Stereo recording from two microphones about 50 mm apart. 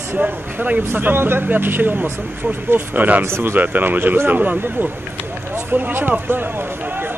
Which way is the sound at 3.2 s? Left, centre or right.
Right.